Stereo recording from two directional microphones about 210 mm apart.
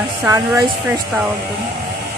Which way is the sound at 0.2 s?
10° right (ahead or behind).